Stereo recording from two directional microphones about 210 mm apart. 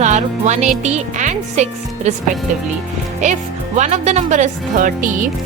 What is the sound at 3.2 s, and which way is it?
A woman's voice, 35° right (ahead or behind).